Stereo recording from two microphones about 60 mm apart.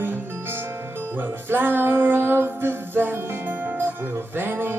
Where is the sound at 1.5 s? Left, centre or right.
Right.